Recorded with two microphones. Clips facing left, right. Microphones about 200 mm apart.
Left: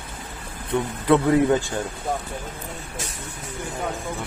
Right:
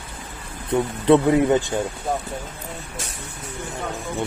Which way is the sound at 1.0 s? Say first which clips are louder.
Right 2 dB; 20° right (ahead or behind).